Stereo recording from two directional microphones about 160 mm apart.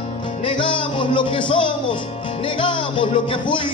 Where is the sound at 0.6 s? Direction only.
30° left (ahead or behind).